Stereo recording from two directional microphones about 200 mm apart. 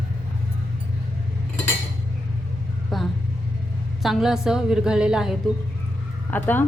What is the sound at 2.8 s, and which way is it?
A woman's voice, centre (ahead or behind).